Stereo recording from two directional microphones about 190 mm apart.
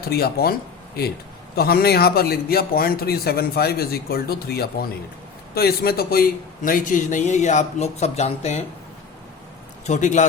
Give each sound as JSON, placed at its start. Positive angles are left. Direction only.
{"t": 0.0, "sound": "a man's voice", "side_deg": 55}
{"t": 9.8, "sound": "a man's voice", "side_deg": 40}